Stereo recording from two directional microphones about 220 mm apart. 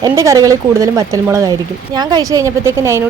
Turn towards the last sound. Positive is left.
turn(degrees=-10)  # may be behind; listen again after turning